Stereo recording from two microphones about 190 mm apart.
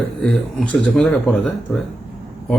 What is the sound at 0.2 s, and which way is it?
A man's voice, 5° left (ahead or behind).